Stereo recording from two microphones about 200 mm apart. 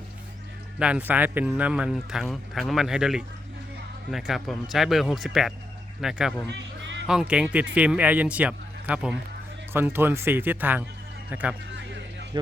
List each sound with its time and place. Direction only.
0.8 s speech: 5° right (ahead or behind)
6.5 s music: 65° right (ahead or behind)
7.1 s speech: 5° right (ahead or behind)